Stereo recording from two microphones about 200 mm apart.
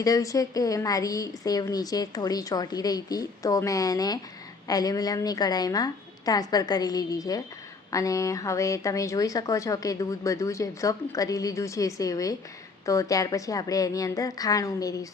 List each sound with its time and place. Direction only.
0.0 s a woman's voice: 15° left (ahead or behind)